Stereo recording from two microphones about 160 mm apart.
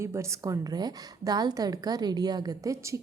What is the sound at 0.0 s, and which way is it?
A woman's voice, 15° right (ahead or behind).